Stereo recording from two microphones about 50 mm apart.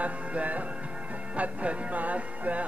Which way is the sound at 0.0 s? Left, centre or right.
Right.